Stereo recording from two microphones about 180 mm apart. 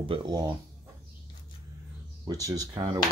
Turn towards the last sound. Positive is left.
turn(degrees=-20)  # may be behind; listen again after turning